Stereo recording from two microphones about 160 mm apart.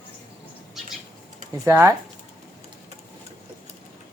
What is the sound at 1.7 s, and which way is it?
Speech, 15° right (ahead or behind).